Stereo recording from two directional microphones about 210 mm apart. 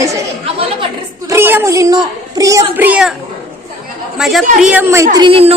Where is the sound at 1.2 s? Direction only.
10° right (ahead or behind).